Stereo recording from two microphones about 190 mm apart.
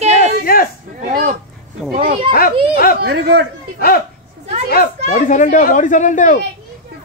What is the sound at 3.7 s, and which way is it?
A man's voice, 50° left (ahead or behind).